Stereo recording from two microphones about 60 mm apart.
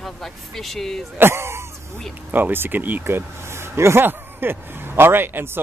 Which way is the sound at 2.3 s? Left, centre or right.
Right.